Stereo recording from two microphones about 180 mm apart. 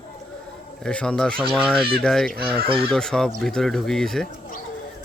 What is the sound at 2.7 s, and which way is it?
Fowl, 30° right (ahead or behind).